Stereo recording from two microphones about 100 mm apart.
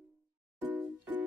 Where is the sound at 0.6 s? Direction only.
15° right (ahead or behind).